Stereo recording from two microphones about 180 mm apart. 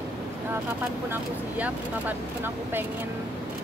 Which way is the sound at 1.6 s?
10° right (ahead or behind).